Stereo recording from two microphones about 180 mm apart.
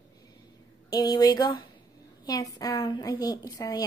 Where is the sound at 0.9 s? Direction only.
20° left (ahead or behind).